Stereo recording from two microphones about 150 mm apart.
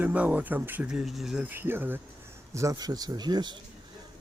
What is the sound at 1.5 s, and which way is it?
Speech, 15° right (ahead or behind).